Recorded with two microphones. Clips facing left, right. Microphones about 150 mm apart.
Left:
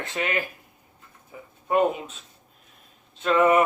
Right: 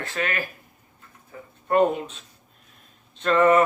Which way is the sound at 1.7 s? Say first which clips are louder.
Right 2 dB; 5° left (ahead or behind).